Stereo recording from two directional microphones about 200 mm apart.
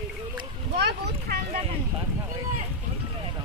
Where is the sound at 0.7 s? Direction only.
55° right (ahead or behind).